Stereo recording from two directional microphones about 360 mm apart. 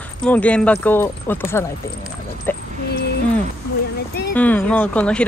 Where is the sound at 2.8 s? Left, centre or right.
Left.